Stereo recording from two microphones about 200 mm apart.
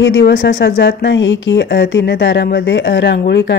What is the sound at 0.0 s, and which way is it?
Speech, 70° left (ahead or behind).